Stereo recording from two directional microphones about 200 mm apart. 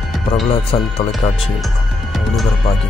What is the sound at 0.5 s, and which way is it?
Speech, 30° left (ahead or behind).